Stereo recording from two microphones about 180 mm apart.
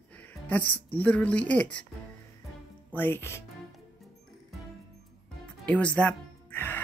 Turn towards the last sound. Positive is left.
turn(degrees=10)  # may be behind; listen again after turning